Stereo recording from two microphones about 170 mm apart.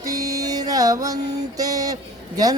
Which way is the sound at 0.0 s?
20° right (ahead or behind).